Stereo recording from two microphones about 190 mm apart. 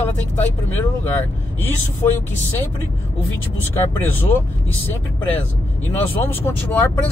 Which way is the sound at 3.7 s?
10° left (ahead or behind).